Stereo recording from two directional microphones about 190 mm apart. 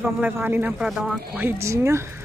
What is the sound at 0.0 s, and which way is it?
Speech, 10° right (ahead or behind).